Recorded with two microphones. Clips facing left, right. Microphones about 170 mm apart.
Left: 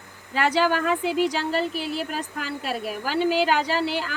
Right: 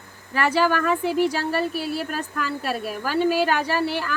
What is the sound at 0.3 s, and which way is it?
Speech, 15° left (ahead or behind).